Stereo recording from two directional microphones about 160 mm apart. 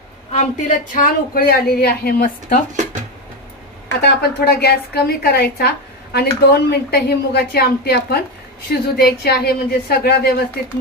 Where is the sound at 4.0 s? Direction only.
90° left.